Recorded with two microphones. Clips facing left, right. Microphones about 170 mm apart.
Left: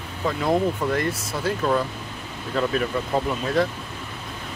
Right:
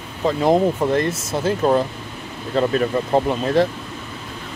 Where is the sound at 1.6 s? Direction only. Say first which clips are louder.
Right 5 dB; 35° right (ahead or behind).